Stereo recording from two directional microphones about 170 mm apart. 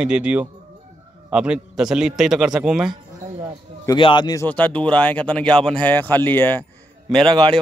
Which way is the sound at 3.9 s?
30° left (ahead or behind).